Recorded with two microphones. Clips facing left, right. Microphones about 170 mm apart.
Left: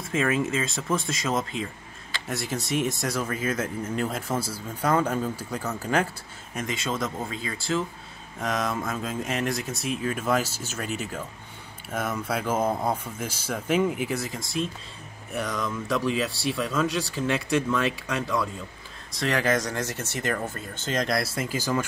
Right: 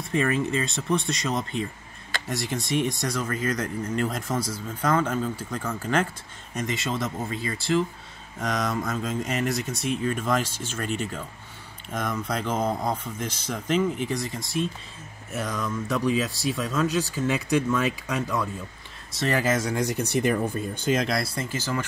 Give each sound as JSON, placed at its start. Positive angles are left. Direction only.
{"t": 0.0, "sound": "speech", "side_deg": 0}
{"t": 4.3, "sound": "speech", "side_deg": 30}
{"t": 4.8, "sound": "speech", "side_deg": 10}
{"t": 21.5, "sound": "speech", "side_deg": 15}